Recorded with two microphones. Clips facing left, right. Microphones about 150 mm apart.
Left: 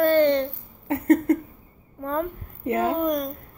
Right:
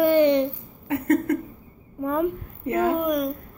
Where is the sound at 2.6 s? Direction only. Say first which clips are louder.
Right 1 dB; 30° left (ahead or behind).